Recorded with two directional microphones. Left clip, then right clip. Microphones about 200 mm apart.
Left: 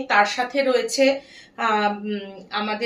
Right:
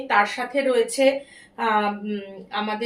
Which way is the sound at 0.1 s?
20° left (ahead or behind).